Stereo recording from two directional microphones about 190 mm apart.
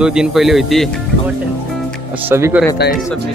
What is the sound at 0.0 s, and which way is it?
Speech, 5° right (ahead or behind).